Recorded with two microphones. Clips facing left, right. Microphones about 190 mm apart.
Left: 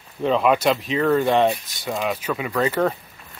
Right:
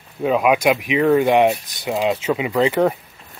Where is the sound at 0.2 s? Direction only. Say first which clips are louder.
Right 2 dB; 10° right (ahead or behind).